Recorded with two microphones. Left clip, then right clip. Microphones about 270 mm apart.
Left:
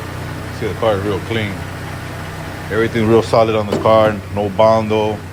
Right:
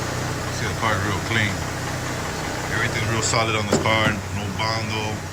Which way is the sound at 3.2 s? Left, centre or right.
Centre.